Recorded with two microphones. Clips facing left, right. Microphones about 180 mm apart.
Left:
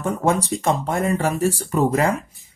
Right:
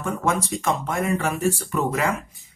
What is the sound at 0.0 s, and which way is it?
Speech, 35° left (ahead or behind).